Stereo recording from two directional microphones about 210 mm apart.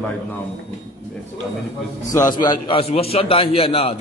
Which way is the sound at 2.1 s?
15° left (ahead or behind).